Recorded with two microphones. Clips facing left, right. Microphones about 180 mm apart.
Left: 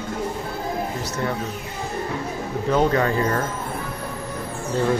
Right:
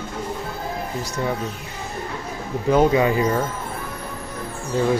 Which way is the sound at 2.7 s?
10° right (ahead or behind).